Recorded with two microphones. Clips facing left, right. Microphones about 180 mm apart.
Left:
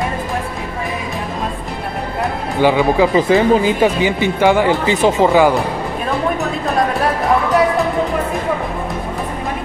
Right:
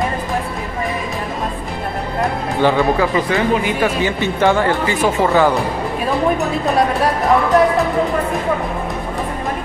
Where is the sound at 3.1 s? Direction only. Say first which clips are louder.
Left 4 dB; 30° left (ahead or behind).